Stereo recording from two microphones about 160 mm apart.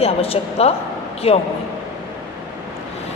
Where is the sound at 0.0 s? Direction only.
40° left (ahead or behind).